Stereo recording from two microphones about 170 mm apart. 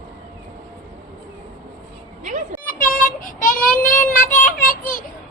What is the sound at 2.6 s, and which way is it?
Child singing, 55° left (ahead or behind).